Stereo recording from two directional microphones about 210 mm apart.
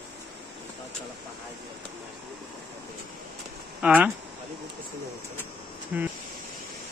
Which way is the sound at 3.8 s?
5° right (ahead or behind).